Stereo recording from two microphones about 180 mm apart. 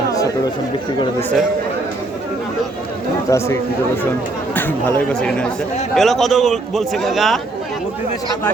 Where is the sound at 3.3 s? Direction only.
15° left (ahead or behind).